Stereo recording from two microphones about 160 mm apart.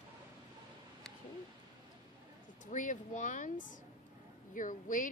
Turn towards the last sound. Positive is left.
turn(degrees=55)  # may be behind; listen again after turning